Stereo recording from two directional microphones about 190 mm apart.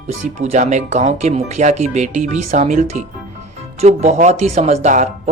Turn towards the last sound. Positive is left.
turn(degrees=-40)  # may be behind; listen again after turning